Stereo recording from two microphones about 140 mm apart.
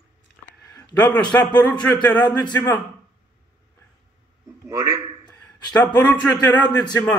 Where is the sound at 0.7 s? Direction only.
30° left (ahead or behind).